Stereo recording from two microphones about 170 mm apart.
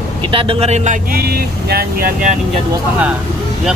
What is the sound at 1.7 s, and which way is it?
Speech, 65° right (ahead or behind).